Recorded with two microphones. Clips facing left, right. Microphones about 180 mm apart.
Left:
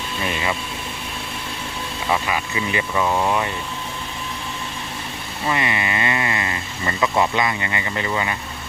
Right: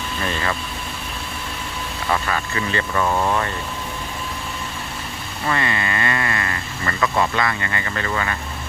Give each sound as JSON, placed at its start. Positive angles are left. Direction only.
{"t": 0.2, "sound": "vehicle", "side_deg": 15}
{"t": 2.0, "sound": "speech", "side_deg": 10}
{"t": 5.5, "sound": "speech", "side_deg": 15}